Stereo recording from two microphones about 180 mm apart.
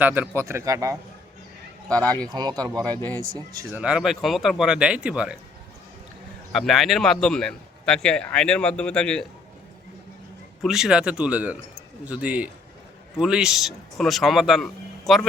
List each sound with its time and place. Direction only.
0.0 s speech: 10° right (ahead or behind)
1.9 s speech: 5° left (ahead or behind)
2.3 s speech: 25° right (ahead or behind); by 5.4 s 5° right (ahead or behind)
6.5 s speech: centre (ahead or behind)
10.6 s speech: 5° right (ahead or behind)